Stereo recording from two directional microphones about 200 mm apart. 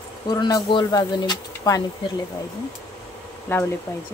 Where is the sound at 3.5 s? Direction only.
10° left (ahead or behind).